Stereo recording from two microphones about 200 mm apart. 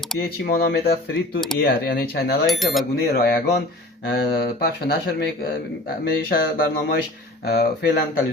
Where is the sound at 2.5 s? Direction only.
Centre (ahead or behind).